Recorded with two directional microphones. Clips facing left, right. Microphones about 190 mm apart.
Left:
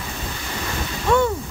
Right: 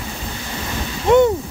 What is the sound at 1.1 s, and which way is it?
Speech, 20° right (ahead or behind).